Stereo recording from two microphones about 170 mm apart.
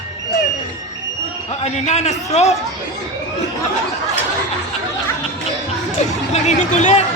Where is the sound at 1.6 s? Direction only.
40° left (ahead or behind).